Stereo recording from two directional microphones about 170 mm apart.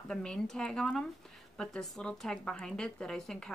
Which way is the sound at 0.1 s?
5° left (ahead or behind).